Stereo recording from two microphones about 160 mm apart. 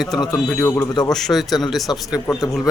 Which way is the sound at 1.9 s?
30° left (ahead or behind).